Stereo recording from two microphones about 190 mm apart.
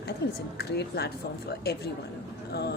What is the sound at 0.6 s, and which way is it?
A woman's voice, 60° left (ahead or behind).